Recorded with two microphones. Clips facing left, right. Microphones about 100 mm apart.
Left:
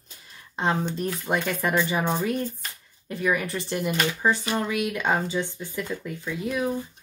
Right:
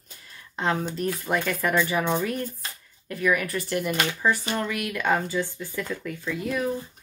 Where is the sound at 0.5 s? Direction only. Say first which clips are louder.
Left 1 dB; 20° left (ahead or behind).